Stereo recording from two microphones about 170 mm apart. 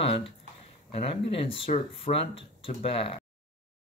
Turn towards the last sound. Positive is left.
turn(degrees=35)  # may be behind; listen again after turning